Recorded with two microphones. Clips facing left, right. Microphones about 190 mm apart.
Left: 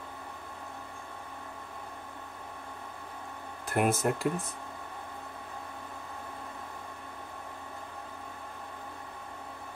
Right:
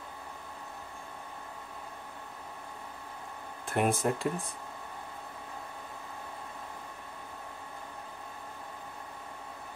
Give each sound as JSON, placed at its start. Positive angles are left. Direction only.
{"t": 3.6, "sound": "speech", "side_deg": 5}